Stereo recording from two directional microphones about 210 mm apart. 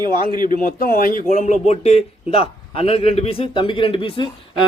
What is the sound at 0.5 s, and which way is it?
A man's voice, 40° left (ahead or behind).